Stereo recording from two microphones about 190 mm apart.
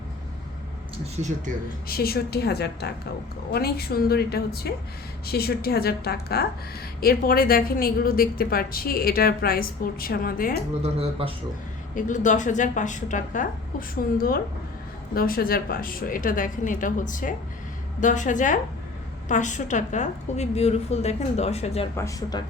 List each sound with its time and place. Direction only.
1.9 s a woman's voice: 55° left (ahead or behind)
10.5 s speech: 30° right (ahead or behind)
11.9 s a woman's voice: 40° left (ahead or behind)
21.9 s speech: 20° left (ahead or behind)